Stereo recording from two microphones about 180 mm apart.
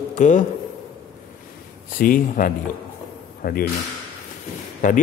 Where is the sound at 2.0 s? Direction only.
50° left (ahead or behind).